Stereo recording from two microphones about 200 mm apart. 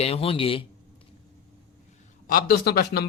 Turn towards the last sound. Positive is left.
turn(degrees=50)  # may be behind; listen again after turning